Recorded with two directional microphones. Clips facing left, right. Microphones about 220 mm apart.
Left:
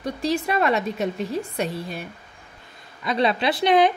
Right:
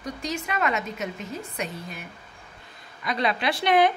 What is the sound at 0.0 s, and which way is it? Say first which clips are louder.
A woman's voice: left 7 dB; 35° left (ahead or behind).